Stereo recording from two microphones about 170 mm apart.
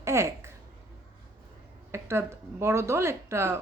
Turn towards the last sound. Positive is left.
turn(degrees=-15)  # may be behind; listen again after turning